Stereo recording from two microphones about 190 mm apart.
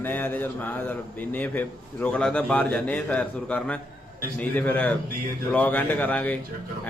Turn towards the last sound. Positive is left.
turn(degrees=10)  # may be behind; listen again after turning